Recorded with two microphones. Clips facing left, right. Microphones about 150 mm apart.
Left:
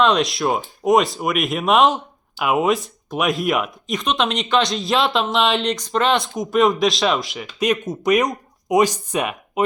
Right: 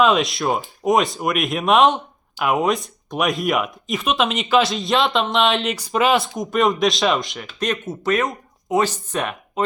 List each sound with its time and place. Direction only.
0.0 s speech: centre (ahead or behind)